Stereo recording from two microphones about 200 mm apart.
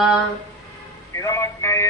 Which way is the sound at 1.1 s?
15° left (ahead or behind).